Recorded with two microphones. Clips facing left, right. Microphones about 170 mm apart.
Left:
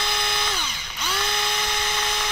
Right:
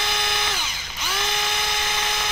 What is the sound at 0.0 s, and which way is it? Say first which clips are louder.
Drill: even; 20° right (ahead or behind).